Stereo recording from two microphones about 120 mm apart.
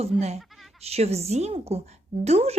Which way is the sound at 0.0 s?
65° right (ahead or behind).